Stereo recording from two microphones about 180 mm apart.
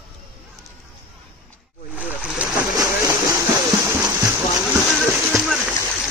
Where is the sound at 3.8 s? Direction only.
15° right (ahead or behind).